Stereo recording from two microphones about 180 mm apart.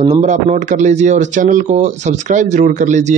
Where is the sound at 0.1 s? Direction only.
40° right (ahead or behind).